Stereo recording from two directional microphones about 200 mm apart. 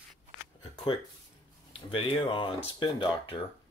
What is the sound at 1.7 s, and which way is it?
Speech, 25° left (ahead or behind).